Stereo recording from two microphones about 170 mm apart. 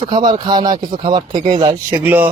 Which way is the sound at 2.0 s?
10° right (ahead or behind).